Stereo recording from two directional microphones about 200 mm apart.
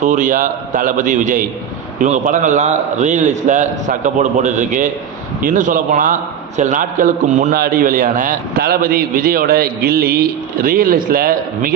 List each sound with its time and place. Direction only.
0.0 s a man's voice: 40° right (ahead or behind)